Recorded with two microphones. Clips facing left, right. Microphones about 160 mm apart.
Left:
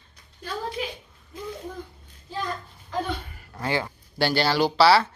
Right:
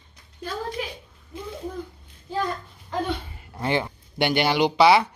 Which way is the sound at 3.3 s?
20° right (ahead or behind).